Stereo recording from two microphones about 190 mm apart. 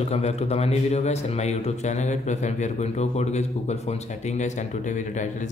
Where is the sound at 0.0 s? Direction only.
35° left (ahead or behind).